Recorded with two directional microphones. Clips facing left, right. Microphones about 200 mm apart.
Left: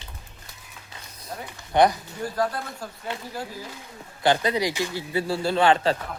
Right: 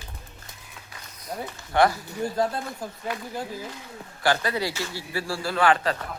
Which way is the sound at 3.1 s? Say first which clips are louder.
Right 1 dB; 25° left (ahead or behind).